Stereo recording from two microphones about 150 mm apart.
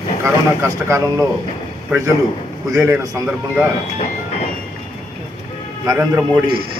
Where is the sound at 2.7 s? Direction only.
20° right (ahead or behind).